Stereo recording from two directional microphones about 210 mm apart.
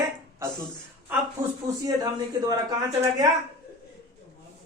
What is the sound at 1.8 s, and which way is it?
A man's voice, 20° right (ahead or behind).